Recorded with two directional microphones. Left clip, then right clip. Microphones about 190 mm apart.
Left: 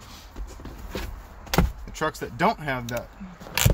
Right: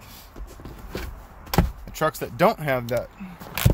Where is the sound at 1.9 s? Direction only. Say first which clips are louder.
Right 3 dB; 40° right (ahead or behind).